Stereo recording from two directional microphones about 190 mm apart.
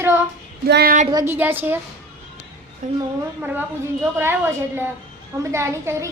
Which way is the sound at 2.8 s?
40° right (ahead or behind).